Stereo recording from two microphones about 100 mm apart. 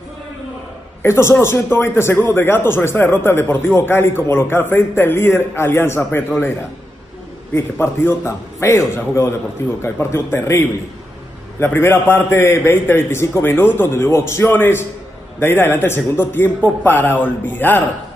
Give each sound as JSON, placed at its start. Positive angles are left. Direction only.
{"t": 1.0, "sound": "speech", "side_deg": 25}
{"t": 7.5, "sound": "speech", "side_deg": 25}